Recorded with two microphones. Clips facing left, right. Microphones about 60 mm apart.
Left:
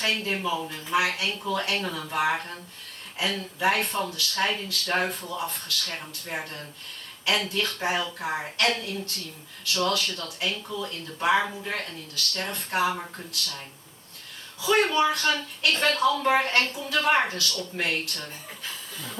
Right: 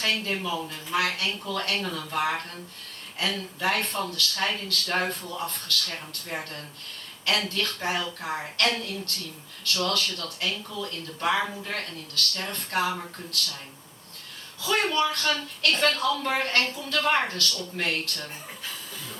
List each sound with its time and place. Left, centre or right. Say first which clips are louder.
0.0 s a woman's voice: left 1 dB; centre
7.3 s a woman's voice: left 2 dB; centre
14.6 s a woman's voice: left 3 dB; centre